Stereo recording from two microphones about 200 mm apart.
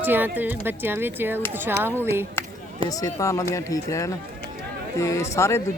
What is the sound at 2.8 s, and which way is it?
Speech, 15° left (ahead or behind).